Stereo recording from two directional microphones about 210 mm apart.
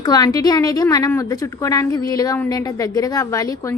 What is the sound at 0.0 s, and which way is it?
A woman's voice, 20° left (ahead or behind).